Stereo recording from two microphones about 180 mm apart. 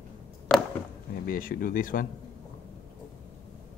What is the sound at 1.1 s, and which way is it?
Speech, 50° left (ahead or behind).